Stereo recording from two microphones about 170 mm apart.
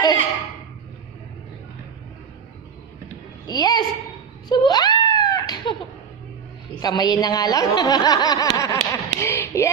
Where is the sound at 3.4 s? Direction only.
25° left (ahead or behind).